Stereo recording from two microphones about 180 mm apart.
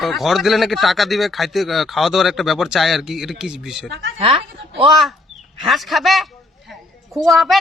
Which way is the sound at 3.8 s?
90° right.